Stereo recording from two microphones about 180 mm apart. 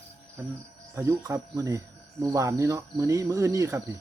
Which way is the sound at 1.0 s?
15° right (ahead or behind).